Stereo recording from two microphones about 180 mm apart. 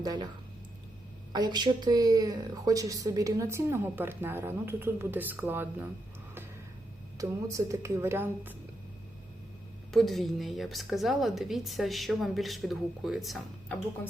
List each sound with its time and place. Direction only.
0.0 s speech: 20° right (ahead or behind)
1.3 s speech: 25° right (ahead or behind)
7.2 s speech: 20° right (ahead or behind)
9.9 s a woman's voice: centre (ahead or behind)